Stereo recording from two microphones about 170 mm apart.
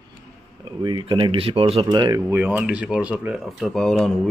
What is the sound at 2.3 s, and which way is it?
Speech, 10° right (ahead or behind).